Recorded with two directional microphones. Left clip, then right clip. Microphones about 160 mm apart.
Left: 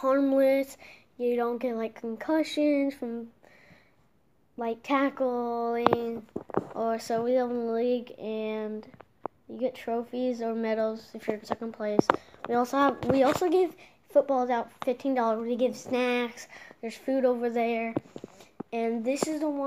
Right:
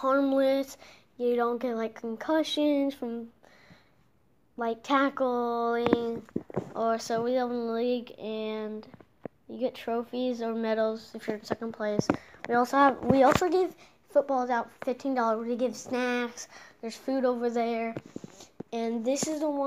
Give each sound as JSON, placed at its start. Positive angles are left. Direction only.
{"t": 0.0, "sound": "a woman's voice", "side_deg": 15}
{"t": 4.6, "sound": "speech", "side_deg": 5}
{"t": 6.7, "sound": "a woman's voice", "side_deg": 10}
{"t": 9.5, "sound": "a woman's voice", "side_deg": 0}